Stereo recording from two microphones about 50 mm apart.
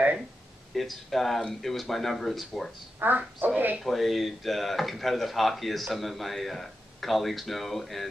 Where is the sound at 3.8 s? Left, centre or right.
Centre.